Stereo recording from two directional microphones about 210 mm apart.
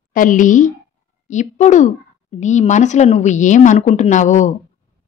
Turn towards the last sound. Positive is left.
turn(degrees=35)  # may be behind; listen again after turning